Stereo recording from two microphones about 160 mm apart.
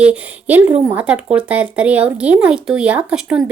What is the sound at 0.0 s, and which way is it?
Speech, 10° right (ahead or behind).